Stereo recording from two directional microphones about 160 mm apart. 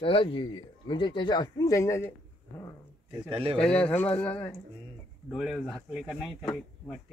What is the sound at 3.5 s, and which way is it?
A man's voice, 5° left (ahead or behind).